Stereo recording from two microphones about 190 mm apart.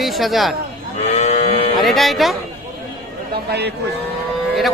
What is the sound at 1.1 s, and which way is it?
Moo, 35° left (ahead or behind).